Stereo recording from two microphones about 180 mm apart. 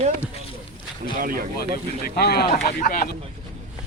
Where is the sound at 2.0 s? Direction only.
60° left (ahead or behind).